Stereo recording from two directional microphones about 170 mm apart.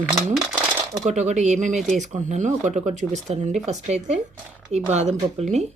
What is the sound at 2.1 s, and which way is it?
Speech, 45° right (ahead or behind).